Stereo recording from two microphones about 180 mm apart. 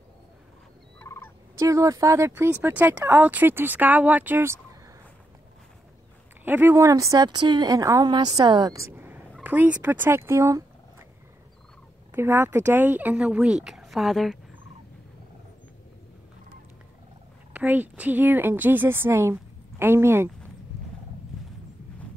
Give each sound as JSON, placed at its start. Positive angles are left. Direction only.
{"t": 0.9, "sound": "fowl", "side_deg": 15}
{"t": 1.6, "sound": "speech", "side_deg": -20}
{"t": 6.4, "sound": "speech", "side_deg": -10}
{"t": 12.1, "sound": "speech", "side_deg": -15}
{"t": 17.5, "sound": "speech", "side_deg": -10}